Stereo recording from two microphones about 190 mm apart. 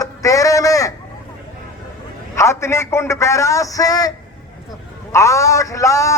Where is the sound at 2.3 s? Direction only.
15° left (ahead or behind).